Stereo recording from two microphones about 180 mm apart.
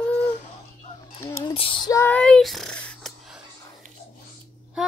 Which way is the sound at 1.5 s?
30° left (ahead or behind).